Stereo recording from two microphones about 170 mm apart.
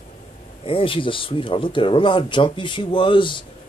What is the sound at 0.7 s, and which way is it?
Speech, 30° left (ahead or behind).